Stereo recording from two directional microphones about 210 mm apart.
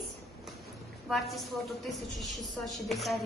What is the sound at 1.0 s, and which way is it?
A woman's voice, centre (ahead or behind).